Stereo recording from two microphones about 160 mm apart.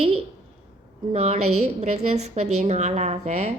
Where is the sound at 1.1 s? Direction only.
40° right (ahead or behind).